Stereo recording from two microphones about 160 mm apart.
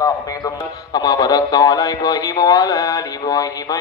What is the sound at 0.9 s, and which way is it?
Speech, 25° left (ahead or behind).